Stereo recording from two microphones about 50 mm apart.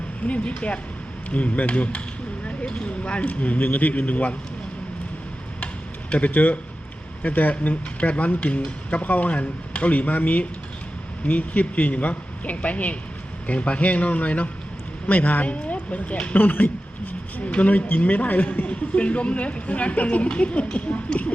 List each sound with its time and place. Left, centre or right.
0.2 s a man's voice: left
6.1 s a man's voice: left